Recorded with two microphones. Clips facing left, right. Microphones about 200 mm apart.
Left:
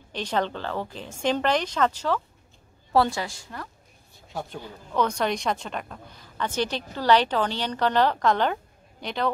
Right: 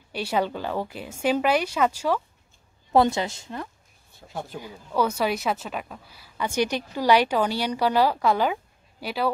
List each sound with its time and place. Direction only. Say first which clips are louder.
0.1 s a woman's voice: right 1 dB; 10° right (ahead or behind)
4.3 s a man's voice: even; centre (ahead or behind)